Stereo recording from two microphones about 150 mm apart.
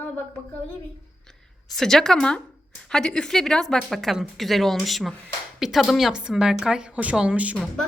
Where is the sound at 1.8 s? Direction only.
5° left (ahead or behind).